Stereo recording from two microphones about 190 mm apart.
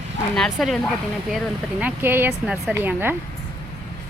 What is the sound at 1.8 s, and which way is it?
Speech, 10° right (ahead or behind).